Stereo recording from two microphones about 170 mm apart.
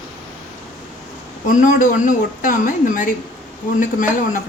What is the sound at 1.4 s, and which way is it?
A woman's voice, 50° left (ahead or behind).